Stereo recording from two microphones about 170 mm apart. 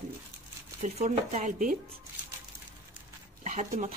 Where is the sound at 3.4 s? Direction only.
45° right (ahead or behind).